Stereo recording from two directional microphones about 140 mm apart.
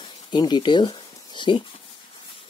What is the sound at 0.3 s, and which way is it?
Speech, 30° left (ahead or behind).